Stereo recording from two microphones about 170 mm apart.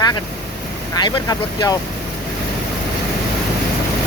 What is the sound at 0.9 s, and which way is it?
Speech, 25° left (ahead or behind).